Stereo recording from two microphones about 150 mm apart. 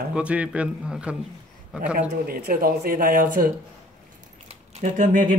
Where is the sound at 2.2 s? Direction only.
80° right.